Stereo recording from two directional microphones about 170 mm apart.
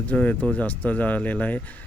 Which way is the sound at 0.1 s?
5° left (ahead or behind).